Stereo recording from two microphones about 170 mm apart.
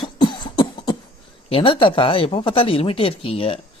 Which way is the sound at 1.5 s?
30° left (ahead or behind).